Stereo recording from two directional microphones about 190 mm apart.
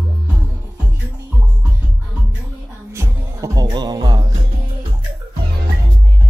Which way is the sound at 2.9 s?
15° right (ahead or behind).